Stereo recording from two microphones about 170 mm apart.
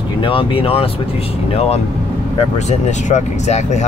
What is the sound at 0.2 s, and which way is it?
Speech, 30° left (ahead or behind).